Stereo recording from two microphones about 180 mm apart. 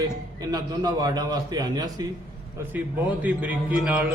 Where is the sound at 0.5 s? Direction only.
20° right (ahead or behind).